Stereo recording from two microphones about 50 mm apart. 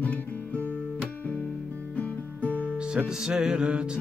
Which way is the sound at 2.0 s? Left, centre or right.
Left.